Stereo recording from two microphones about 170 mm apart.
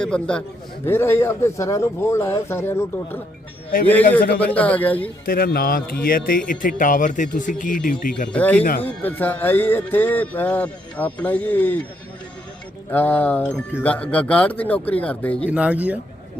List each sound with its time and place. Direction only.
0.0 s a man's voice: 5° left (ahead or behind)
0.9 s music: 15° left (ahead or behind)
5.2 s speech: 60° left (ahead or behind)
8.3 s music: 10° left (ahead or behind)
12.9 s music: 10° left (ahead or behind)
15.4 s speech: 10° right (ahead or behind)